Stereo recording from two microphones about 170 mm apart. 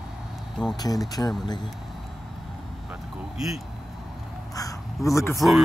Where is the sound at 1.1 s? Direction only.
20° left (ahead or behind).